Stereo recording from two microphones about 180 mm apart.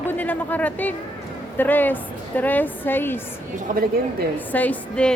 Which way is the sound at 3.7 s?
50° right (ahead or behind).